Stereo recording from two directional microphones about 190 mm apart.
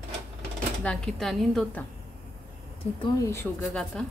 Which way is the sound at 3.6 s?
Centre (ahead or behind).